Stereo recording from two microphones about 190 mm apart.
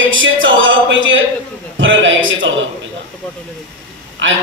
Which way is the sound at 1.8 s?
80° right.